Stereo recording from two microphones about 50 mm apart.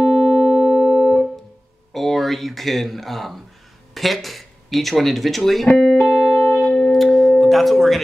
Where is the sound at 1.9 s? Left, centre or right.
Centre.